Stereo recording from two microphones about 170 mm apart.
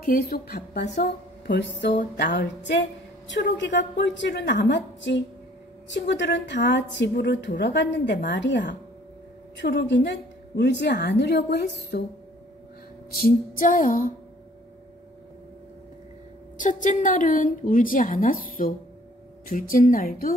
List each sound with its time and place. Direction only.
0.0 s a woman's voice: 60° left (ahead or behind)
0.8 s a woman's voice: 45° left (ahead or behind)
1.5 s a woman's voice: 90° left; by 12.0 s 75° left (ahead or behind)
13.1 s a woman's voice: 55° left (ahead or behind)
16.5 s a woman's voice: 50° left (ahead or behind)